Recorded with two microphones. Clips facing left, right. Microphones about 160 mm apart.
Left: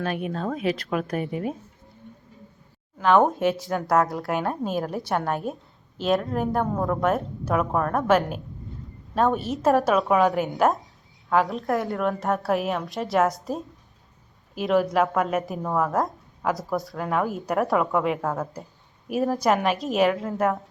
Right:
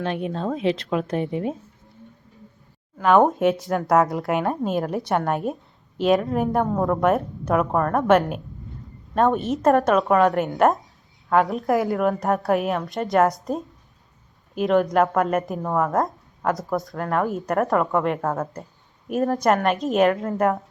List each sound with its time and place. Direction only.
0.0 s speech: 25° right (ahead or behind)
3.0 s speech: centre (ahead or behind)